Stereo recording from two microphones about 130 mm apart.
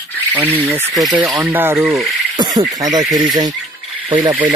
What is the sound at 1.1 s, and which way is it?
Speech, 35° right (ahead or behind).